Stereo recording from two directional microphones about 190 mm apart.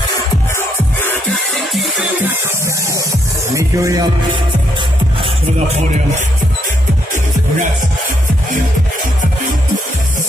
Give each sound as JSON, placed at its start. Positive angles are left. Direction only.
{"t": 1.7, "sound": "music", "side_deg": 0}
{"t": 2.6, "sound": "music", "side_deg": -15}